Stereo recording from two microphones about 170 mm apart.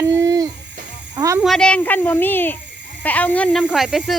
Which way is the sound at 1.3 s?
Centre (ahead or behind).